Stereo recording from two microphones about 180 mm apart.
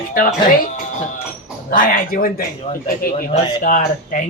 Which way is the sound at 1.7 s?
50° left (ahead or behind).